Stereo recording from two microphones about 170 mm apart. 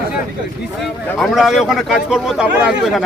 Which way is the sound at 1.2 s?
Centre (ahead or behind).